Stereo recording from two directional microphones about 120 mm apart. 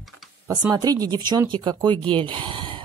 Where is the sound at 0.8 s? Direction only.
35° right (ahead or behind).